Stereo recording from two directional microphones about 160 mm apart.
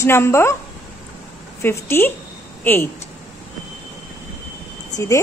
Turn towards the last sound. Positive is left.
turn(degrees=20)  # may be behind; listen again after turning